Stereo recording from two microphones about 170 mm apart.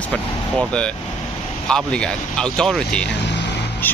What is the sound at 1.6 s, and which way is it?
Speech, 5° left (ahead or behind).